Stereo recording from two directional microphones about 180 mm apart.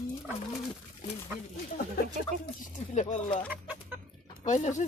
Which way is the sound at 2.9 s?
40° left (ahead or behind).